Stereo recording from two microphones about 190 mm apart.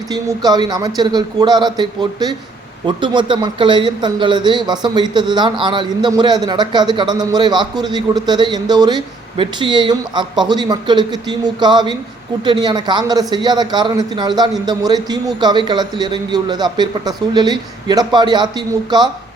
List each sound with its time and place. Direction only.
0.1 s speech: 20° right (ahead or behind)